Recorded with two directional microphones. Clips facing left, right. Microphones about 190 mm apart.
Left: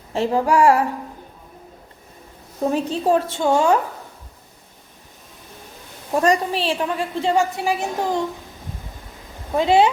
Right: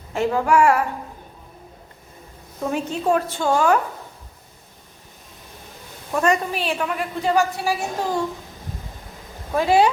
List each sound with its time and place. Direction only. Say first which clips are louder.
0.1 s a woman's voice: left 1 dB; 30° left (ahead or behind)
2.7 s a woman's voice: left 1 dB; 35° left (ahead or behind)
6.1 s a woman's voice: left 2 dB; 35° left (ahead or behind)
9.5 s a woman's voice: left 1 dB; 20° left (ahead or behind)